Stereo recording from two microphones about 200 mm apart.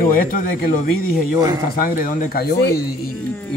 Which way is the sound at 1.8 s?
45° left (ahead or behind).